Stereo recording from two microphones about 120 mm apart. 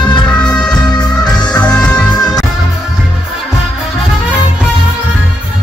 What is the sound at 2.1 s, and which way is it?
Music, 35° left (ahead or behind).